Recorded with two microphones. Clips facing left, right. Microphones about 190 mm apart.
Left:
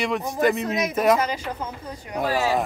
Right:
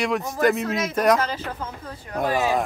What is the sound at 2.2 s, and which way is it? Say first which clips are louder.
Speech: right 1 dB; 15° right (ahead or behind).